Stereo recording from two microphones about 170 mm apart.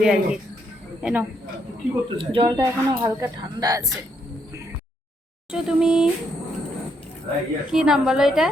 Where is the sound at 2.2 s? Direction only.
30° right (ahead or behind).